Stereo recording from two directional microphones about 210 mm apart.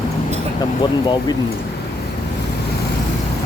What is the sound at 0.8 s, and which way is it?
Speech, 20° left (ahead or behind).